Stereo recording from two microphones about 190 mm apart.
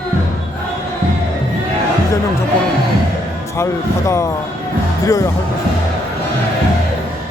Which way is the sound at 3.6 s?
15° left (ahead or behind).